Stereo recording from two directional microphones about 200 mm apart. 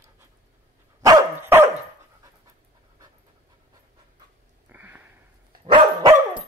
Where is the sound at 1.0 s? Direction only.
15° right (ahead or behind).